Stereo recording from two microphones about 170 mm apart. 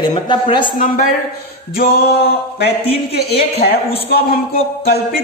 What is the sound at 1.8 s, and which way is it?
Speech, 65° left (ahead or behind).